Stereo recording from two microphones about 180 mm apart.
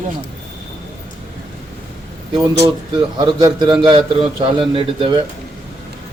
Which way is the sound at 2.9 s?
25° right (ahead or behind).